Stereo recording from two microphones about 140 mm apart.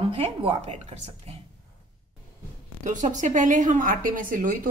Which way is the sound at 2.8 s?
65° right (ahead or behind).